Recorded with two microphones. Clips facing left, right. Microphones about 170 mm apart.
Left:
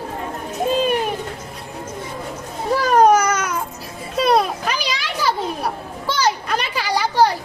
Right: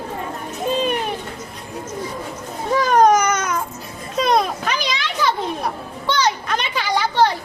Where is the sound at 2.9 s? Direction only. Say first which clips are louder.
Left 1 dB; 10° left (ahead or behind).